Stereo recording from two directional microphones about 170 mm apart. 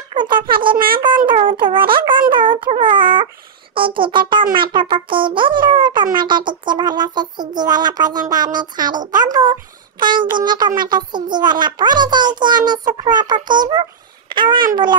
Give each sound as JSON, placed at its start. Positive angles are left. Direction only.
{"t": 0.1, "sound": "a child's voice", "side_deg": -25}